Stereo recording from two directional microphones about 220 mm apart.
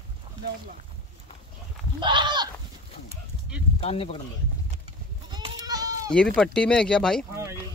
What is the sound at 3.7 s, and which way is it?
Speech, 25° left (ahead or behind).